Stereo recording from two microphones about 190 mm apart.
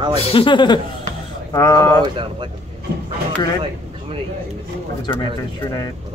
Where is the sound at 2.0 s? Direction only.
25° right (ahead or behind).